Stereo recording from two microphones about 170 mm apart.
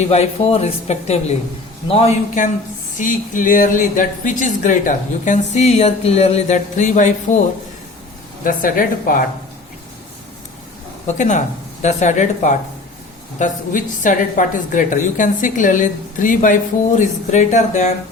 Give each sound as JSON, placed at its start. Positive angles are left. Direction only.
{"t": 0.0, "sound": "speech", "side_deg": 40}
{"t": 8.4, "sound": "speech", "side_deg": 55}
{"t": 11.0, "sound": "speech", "side_deg": 45}